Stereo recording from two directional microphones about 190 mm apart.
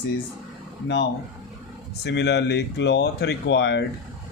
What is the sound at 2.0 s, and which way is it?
Speech, 60° left (ahead or behind).